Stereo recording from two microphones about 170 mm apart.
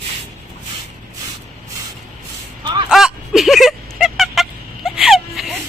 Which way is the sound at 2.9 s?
Centre (ahead or behind).